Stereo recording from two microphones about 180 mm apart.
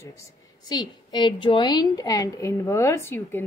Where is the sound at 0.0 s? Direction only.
15° left (ahead or behind).